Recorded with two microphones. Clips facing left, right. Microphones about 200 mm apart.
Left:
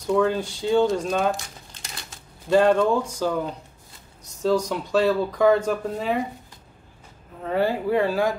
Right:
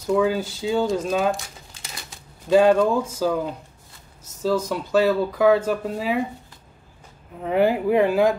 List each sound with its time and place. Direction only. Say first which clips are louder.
0.0 s speech: right 1 dB; 5° right (ahead or behind)
7.4 s speech: right 3 dB; 15° right (ahead or behind)